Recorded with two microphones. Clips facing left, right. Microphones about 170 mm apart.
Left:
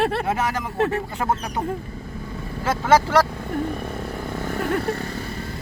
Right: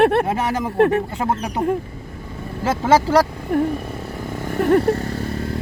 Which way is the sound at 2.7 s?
30° right (ahead or behind).